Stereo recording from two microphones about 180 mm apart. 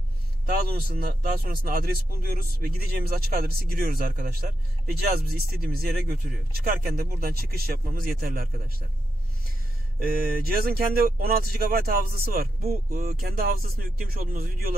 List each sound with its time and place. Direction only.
0.5 s speech: 60° right (ahead or behind)
10.2 s speech: 55° right (ahead or behind)